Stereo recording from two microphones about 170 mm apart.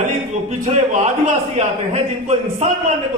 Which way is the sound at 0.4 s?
45° right (ahead or behind).